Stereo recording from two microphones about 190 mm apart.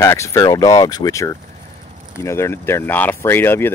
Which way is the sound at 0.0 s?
15° left (ahead or behind).